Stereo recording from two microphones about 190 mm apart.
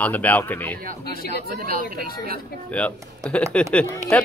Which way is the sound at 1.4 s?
50° right (ahead or behind).